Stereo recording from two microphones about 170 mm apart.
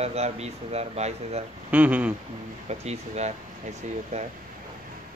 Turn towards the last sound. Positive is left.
turn(degrees=-40)  # may be behind; listen again after turning